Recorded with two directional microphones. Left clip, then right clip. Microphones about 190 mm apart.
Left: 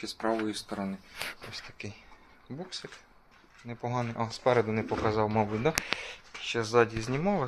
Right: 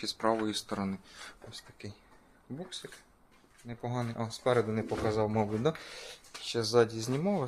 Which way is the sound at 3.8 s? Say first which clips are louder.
Left 4 dB; 5° right (ahead or behind).